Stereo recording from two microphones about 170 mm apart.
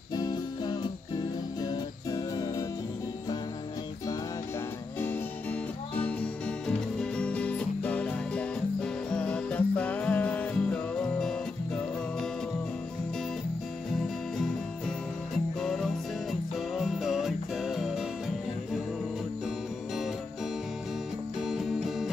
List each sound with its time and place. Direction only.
0.1 s music: 25° left (ahead or behind)
4.9 s music: 10° left (ahead or behind)
15.6 s music: centre (ahead or behind)
21.4 s music: centre (ahead or behind)